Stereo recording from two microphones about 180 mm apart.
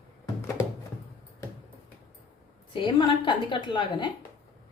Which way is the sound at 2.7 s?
25° left (ahead or behind).